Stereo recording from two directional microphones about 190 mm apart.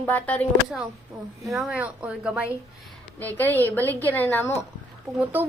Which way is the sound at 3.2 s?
10° left (ahead or behind).